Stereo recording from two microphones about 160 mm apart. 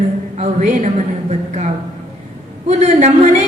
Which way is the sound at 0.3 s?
45° right (ahead or behind).